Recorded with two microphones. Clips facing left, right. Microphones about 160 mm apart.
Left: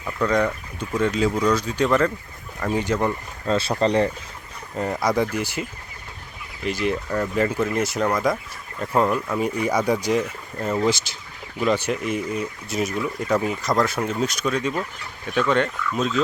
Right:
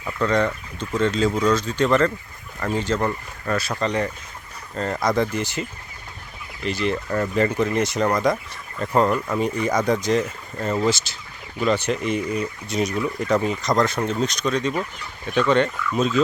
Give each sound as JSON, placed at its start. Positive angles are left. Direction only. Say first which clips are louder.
{"t": 0.2, "sound": "speech", "louder": "even", "side_deg": 10}
{"t": 4.7, "sound": "speech", "louder": "even", "side_deg": 15}
{"t": 6.7, "sound": "speech", "louder": "even", "side_deg": 10}
{"t": 9.6, "sound": "speech", "louder": "even", "side_deg": 10}